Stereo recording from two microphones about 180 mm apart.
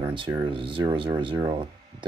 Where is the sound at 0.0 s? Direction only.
30° right (ahead or behind).